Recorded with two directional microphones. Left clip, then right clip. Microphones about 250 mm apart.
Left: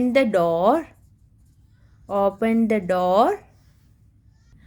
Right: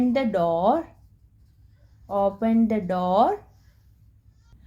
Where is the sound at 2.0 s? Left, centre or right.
Left.